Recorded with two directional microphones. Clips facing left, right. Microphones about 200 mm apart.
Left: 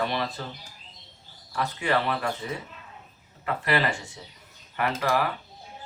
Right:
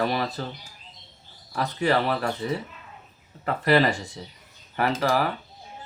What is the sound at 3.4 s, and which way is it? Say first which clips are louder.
Speech: right 5 dB; 40° right (ahead or behind).